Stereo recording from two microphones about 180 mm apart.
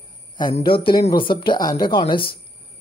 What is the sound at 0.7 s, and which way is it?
Speech, 30° left (ahead or behind).